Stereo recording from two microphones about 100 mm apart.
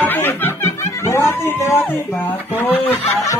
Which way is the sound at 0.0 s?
20° left (ahead or behind).